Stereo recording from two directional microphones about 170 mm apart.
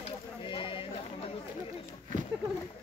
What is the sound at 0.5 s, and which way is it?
Speech, 30° left (ahead or behind).